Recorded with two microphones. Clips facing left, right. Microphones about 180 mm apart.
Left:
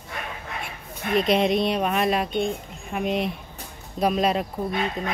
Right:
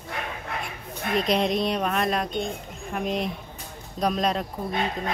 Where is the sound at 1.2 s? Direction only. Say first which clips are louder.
Left 3 dB; centre (ahead or behind).